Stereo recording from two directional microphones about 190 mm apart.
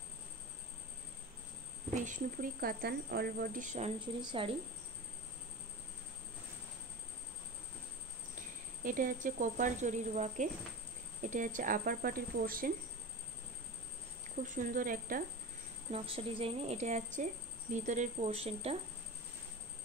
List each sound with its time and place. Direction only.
2.0 s speech: 45° right (ahead or behind)
4.0 s speech: 25° right (ahead or behind)
8.8 s a woman's voice: 45° right (ahead or behind)
14.4 s speech: 45° right (ahead or behind)
15.9 s a woman's voice: 30° right (ahead or behind)